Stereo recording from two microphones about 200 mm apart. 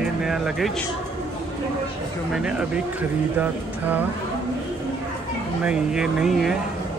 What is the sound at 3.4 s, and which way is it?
Speech, 10° right (ahead or behind).